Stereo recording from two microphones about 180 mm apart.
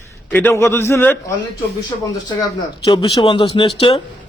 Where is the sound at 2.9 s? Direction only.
30° left (ahead or behind).